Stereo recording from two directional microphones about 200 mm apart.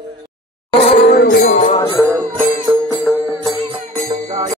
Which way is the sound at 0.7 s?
25° left (ahead or behind).